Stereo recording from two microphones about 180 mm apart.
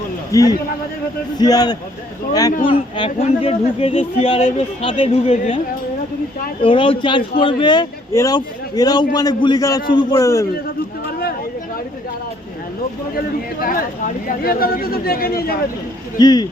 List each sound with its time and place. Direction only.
0.3 s a man's voice: 20° left (ahead or behind)
6.6 s speech: 30° left (ahead or behind)
13.1 s speech: 55° left (ahead or behind)
16.1 s speech: 20° left (ahead or behind)